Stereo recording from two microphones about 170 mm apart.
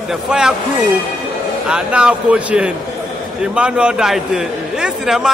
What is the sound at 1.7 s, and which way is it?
A man's voice, 5° right (ahead or behind).